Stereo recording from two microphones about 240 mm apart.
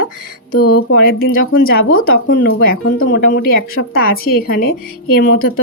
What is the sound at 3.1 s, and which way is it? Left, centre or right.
A woman's voice, left.